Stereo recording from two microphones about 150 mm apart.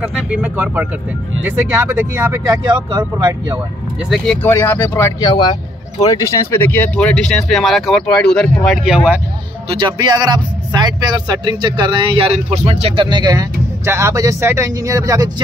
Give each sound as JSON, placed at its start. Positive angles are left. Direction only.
{"t": 0.0, "sound": "speech", "side_deg": -10}
{"t": 2.4, "sound": "speech", "side_deg": -25}
{"t": 4.1, "sound": "speech", "side_deg": 5}
{"t": 5.3, "sound": "speech", "side_deg": 30}
{"t": 9.7, "sound": "speech", "side_deg": -30}